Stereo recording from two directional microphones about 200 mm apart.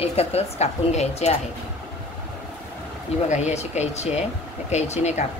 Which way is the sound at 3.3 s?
35° left (ahead or behind).